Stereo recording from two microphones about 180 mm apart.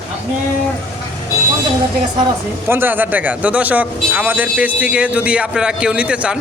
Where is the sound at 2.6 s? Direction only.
10° right (ahead or behind).